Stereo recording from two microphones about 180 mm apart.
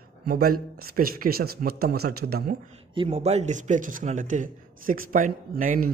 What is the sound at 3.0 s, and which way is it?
A man's voice, 35° right (ahead or behind).